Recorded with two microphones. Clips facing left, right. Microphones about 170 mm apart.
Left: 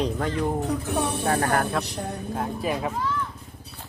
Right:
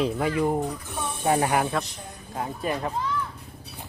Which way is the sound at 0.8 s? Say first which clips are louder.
Left 7 dB; 70° left (ahead or behind).